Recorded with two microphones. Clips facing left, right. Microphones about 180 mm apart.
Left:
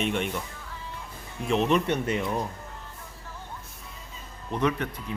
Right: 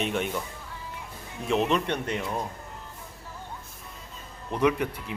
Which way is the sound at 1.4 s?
Centre (ahead or behind).